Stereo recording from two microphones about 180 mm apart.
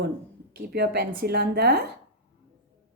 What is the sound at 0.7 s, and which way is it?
A woman's voice, 65° right (ahead or behind).